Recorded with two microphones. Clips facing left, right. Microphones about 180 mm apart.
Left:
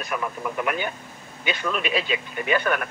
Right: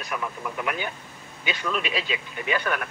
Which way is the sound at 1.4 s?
55° left (ahead or behind).